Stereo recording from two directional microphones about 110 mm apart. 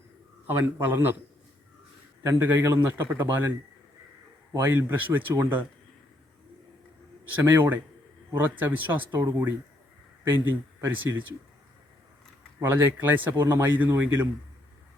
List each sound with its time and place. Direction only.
0.6 s speech: 20° right (ahead or behind)
2.2 s a man's voice: 20° right (ahead or behind)
4.5 s a man's voice: 25° right (ahead or behind)
7.4 s a man's voice: 20° right (ahead or behind)
10.4 s a man's voice: 20° right (ahead or behind)
12.5 s speech: 20° right (ahead or behind)